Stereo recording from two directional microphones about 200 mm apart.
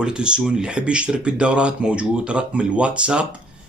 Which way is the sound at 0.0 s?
5° right (ahead or behind).